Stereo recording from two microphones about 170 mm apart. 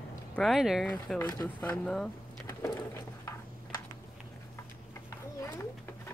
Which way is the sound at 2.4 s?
15° left (ahead or behind).